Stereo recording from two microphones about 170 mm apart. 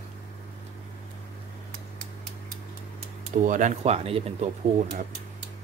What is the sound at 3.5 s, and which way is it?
Speech, 45° right (ahead or behind).